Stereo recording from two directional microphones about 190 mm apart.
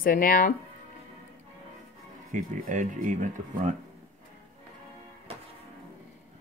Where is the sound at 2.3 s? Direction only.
40° right (ahead or behind).